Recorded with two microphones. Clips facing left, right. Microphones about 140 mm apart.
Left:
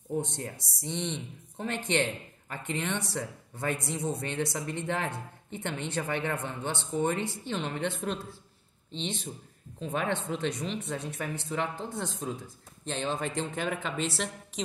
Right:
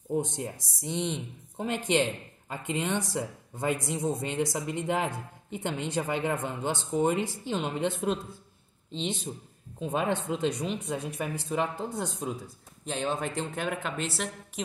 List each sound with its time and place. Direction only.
0.1 s speech: 15° right (ahead or behind)